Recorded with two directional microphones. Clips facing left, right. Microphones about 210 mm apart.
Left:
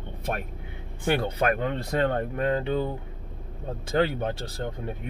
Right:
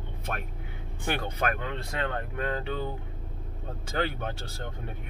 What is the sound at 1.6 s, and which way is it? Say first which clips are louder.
Speech: left 7 dB; 35° left (ahead or behind).